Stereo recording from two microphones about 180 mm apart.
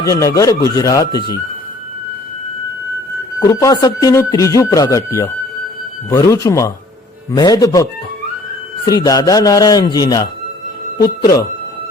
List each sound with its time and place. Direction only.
0.0 s speech: 15° left (ahead or behind)
3.4 s speech: 20° left (ahead or behind)